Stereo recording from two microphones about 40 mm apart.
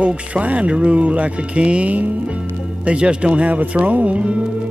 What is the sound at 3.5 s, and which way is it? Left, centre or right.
Music, right.